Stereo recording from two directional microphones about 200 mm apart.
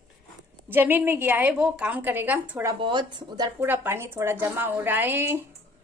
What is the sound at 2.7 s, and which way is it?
A woman's voice, 25° right (ahead or behind).